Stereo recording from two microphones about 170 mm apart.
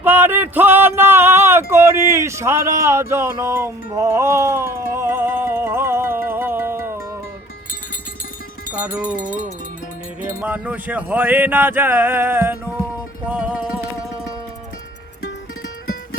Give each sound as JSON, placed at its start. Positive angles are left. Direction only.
{"t": 0.0, "sound": "a sound", "side_deg": -10}
{"t": 8.7, "sound": "music", "side_deg": -10}
{"t": 10.4, "sound": "speech", "side_deg": -10}
{"t": 13.2, "sound": "music", "side_deg": -10}